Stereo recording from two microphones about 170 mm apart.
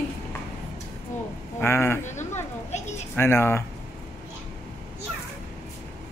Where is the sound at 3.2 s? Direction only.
15° left (ahead or behind).